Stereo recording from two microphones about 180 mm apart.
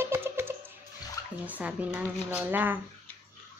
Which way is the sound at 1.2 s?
20° left (ahead or behind).